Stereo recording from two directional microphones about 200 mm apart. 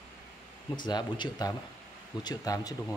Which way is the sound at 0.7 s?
20° left (ahead or behind).